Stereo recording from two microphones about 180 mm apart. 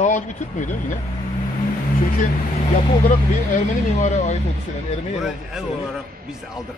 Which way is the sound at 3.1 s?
40° left (ahead or behind).